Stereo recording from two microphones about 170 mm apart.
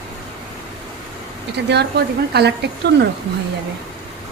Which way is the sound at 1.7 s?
75° right (ahead or behind).